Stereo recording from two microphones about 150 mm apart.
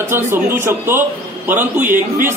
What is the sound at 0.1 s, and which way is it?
A man's voice, 15° right (ahead or behind).